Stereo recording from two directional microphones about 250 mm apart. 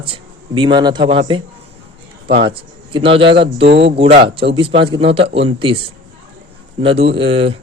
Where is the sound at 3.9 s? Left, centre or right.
Right.